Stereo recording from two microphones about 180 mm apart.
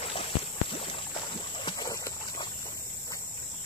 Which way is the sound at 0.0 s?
30° left (ahead or behind).